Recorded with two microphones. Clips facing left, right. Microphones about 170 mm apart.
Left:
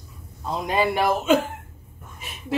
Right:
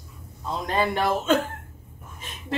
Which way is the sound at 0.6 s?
10° left (ahead or behind).